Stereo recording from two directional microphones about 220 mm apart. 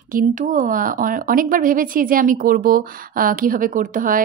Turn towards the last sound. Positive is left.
turn(degrees=-35)  # may be behind; listen again after turning